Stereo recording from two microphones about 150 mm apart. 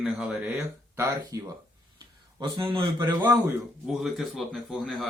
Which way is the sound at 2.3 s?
35° right (ahead or behind).